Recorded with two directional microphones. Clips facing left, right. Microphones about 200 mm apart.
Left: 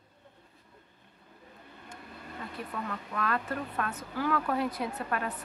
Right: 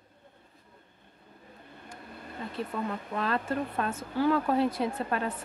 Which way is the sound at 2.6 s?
30° right (ahead or behind).